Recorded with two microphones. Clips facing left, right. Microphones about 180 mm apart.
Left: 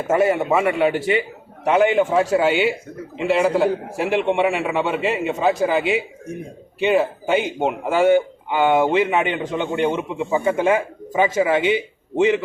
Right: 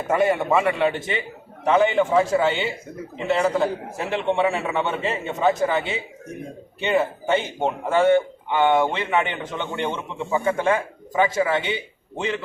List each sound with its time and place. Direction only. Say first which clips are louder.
0.1 s a man's voice: left 2 dB; 5° left (ahead or behind)